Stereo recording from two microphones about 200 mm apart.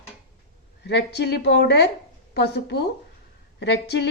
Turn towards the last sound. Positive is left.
turn(degrees=60)  # may be behind; listen again after turning